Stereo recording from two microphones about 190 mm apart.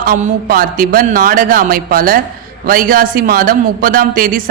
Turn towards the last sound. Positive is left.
turn(degrees=-45)  # may be behind; listen again after turning